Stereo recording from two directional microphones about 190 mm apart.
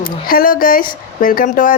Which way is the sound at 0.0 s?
50° left (ahead or behind).